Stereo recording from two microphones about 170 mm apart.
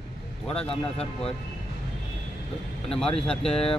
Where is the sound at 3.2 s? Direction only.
5° left (ahead or behind).